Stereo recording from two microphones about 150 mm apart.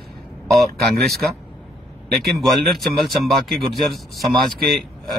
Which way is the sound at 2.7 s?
Centre (ahead or behind).